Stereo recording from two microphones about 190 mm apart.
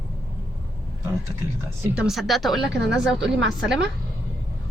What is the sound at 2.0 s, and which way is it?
Speech, centre (ahead or behind).